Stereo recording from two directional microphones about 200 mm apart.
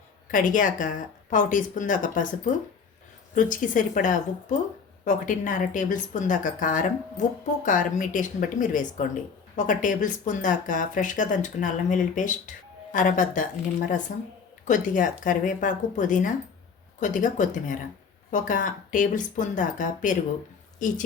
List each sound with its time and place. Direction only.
0.3 s speech: 40° left (ahead or behind)